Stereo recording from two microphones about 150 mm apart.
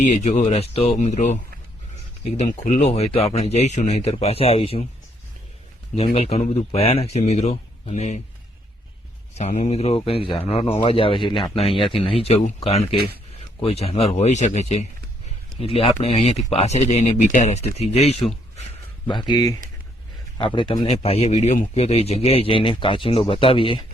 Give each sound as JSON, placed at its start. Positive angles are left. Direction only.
{"t": 0.0, "sound": "speech", "side_deg": 50}
{"t": 2.5, "sound": "speech", "side_deg": 55}
{"t": 6.0, "sound": "speech", "side_deg": 45}
{"t": 6.7, "sound": "speech", "side_deg": 40}
{"t": 9.4, "sound": "speech", "side_deg": 50}
{"t": 19.0, "sound": "speech", "side_deg": 30}